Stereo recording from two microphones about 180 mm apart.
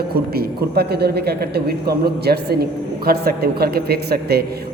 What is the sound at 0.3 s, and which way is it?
A man's voice, 60° right (ahead or behind).